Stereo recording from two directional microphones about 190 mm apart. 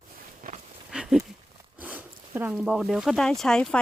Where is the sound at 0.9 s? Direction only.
5° right (ahead or behind).